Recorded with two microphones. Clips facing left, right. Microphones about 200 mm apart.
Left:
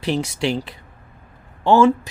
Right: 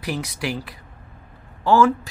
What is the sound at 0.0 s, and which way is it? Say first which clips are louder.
Speech: left 5 dB; 25° left (ahead or behind).